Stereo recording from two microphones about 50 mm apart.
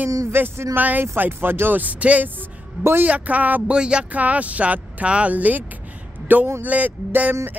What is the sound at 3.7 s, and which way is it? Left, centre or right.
Speech, centre.